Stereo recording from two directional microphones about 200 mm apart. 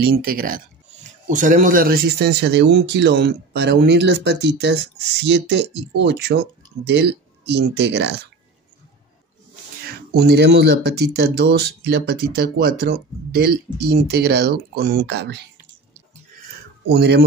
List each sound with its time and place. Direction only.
0.0 s speech: 50° right (ahead or behind)
10.1 s speech: 55° right (ahead or behind)
16.9 s speech: 55° right (ahead or behind)